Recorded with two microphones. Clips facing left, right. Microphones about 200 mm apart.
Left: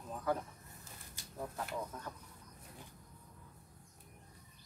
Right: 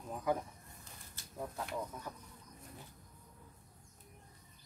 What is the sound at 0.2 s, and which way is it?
Speech, 15° right (ahead or behind).